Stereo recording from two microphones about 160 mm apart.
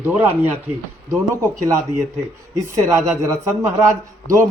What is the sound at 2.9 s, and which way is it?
Speech, 20° right (ahead or behind).